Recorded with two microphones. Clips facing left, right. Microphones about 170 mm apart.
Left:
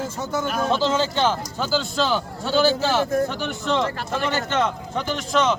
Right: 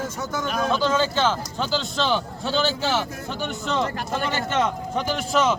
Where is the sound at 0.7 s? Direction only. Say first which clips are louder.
Even; 25° left (ahead or behind).